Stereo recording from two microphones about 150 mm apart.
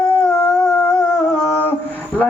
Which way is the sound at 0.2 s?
10° left (ahead or behind).